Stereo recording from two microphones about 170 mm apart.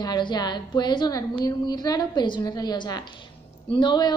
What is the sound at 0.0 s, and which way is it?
A woman's voice, 25° left (ahead or behind).